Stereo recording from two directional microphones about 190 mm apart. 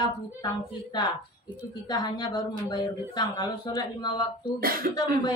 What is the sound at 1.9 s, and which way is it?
A woman's voice, 20° left (ahead or behind).